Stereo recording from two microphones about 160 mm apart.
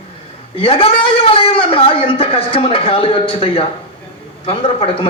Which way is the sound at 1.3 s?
35° left (ahead or behind).